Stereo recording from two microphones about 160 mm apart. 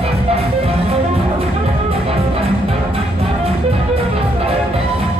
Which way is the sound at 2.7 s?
40° right (ahead or behind).